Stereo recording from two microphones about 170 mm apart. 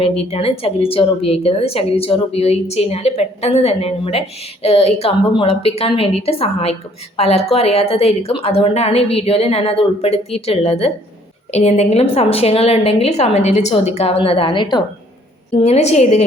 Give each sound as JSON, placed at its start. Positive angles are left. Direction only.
{"t": 0.2, "sound": "a woman's voice", "side_deg": 35}
{"t": 15.5, "sound": "a woman's voice", "side_deg": 40}